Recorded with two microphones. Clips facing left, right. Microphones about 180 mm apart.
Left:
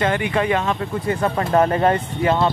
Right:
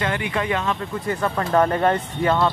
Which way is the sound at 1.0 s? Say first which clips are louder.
Left 2 dB; 20° left (ahead or behind).